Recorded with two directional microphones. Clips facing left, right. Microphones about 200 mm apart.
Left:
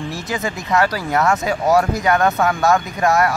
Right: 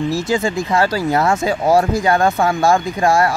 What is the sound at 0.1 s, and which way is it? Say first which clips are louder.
Speech: right 6 dB; 25° right (ahead or behind).